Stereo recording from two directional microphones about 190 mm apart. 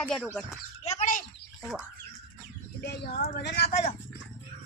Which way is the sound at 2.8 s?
60° left (ahead or behind).